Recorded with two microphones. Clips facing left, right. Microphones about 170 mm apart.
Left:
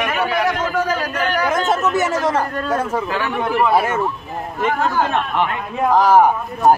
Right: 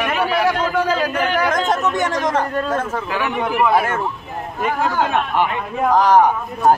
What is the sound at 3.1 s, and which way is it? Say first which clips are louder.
Speech: left 1 dB; 10° right (ahead or behind).